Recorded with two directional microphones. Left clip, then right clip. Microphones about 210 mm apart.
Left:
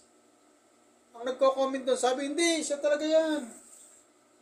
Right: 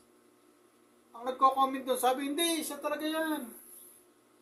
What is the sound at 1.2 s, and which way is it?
Speech, 15° right (ahead or behind).